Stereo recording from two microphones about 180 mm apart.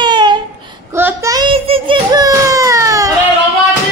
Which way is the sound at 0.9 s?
15° right (ahead or behind).